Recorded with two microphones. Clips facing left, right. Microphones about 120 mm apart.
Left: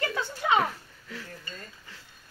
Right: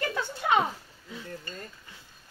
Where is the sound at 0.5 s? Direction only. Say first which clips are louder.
Right 1 dB; 20° right (ahead or behind).